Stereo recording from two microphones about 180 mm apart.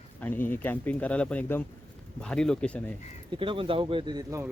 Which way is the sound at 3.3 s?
30° right (ahead or behind).